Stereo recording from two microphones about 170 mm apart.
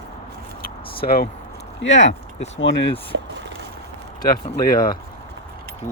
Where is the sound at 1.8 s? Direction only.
90° left.